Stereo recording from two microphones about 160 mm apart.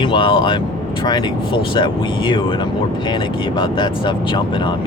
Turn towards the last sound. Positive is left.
turn(degrees=30)  # may be behind; listen again after turning